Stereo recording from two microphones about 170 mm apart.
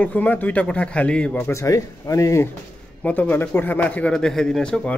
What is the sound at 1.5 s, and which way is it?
A man's voice, 20° left (ahead or behind).